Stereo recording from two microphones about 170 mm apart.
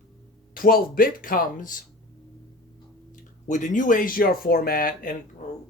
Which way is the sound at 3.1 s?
45° left (ahead or behind).